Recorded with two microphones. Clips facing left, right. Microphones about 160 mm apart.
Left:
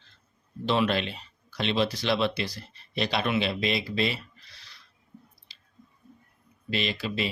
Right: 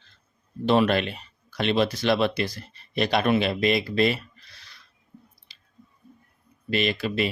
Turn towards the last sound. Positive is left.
turn(degrees=-55)  # may be behind; listen again after turning